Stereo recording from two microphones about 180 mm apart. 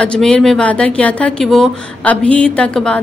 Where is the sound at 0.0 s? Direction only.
5° left (ahead or behind).